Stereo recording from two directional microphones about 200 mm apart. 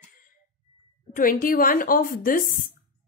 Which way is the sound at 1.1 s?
45° left (ahead or behind).